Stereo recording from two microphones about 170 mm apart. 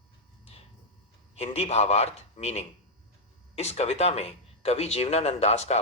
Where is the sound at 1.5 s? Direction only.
40° left (ahead or behind).